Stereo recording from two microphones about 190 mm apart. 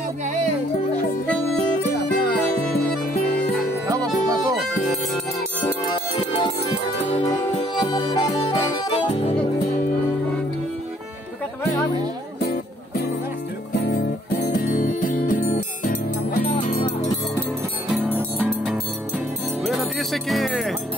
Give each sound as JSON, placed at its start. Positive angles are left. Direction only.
{"t": 0.2, "sound": "music", "side_deg": -40}
{"t": 1.8, "sound": "music", "side_deg": 55}
{"t": 3.8, "sound": "music", "side_deg": -20}
{"t": 7.7, "sound": "music", "side_deg": 25}
{"t": 12.4, "sound": "music", "side_deg": 55}
{"t": 17.9, "sound": "music", "side_deg": -5}